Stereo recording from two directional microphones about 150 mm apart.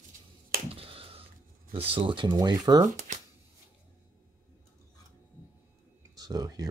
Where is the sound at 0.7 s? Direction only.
40° right (ahead or behind).